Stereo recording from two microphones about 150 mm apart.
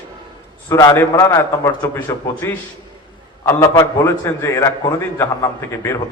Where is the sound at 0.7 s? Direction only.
20° left (ahead or behind).